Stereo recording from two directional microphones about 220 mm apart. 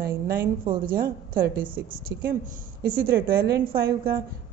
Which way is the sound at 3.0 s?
45° right (ahead or behind).